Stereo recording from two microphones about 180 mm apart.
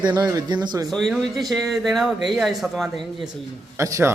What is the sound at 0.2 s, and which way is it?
Speech, 20° right (ahead or behind).